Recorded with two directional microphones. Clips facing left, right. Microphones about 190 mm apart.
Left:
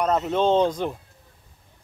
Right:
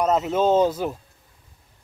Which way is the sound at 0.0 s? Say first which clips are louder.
Right 1 dB; 5° right (ahead or behind).